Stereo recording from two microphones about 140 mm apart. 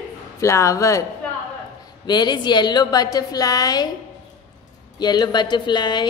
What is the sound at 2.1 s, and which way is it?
Speech, 30° left (ahead or behind).